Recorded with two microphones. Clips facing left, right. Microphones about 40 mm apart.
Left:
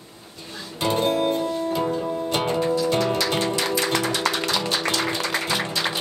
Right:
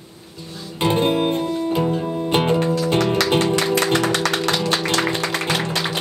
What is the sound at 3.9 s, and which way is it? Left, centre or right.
Music, right.